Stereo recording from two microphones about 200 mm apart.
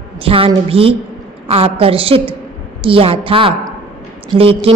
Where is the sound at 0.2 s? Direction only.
25° right (ahead or behind).